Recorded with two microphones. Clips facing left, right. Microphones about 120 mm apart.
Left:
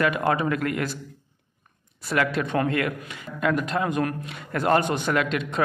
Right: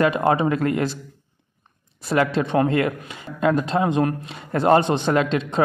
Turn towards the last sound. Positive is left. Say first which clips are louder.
# right 4 dB
turn(degrees=-30)  # may be behind; listen again after turning